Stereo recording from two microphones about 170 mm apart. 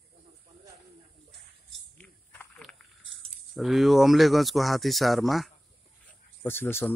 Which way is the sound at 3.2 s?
Centre (ahead or behind).